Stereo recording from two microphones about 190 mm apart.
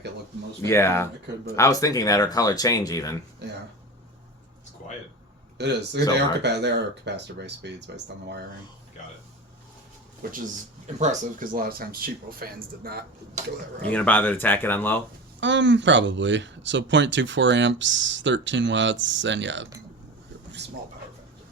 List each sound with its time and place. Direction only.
0.6 s speech: 15° left (ahead or behind)
3.4 s speech: 60° right (ahead or behind)
5.5 s speech: 65° right (ahead or behind)
10.2 s speech: 50° right (ahead or behind)
10.9 s speech: 40° right (ahead or behind)
13.8 s speech: 10° left (ahead or behind)
15.4 s speech: 70° right (ahead or behind)